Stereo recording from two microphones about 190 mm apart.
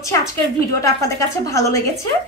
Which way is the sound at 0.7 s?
15° left (ahead or behind).